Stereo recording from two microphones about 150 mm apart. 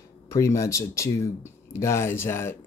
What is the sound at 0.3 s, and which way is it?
Speech, 20° left (ahead or behind).